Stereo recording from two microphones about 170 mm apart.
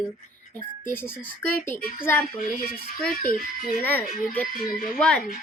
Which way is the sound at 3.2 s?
60° left (ahead or behind).